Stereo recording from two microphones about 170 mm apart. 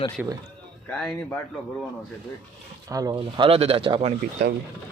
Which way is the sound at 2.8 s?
20° right (ahead or behind).